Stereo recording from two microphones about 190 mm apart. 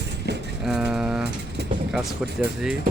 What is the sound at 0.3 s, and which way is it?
Vehicle, 60° right (ahead or behind).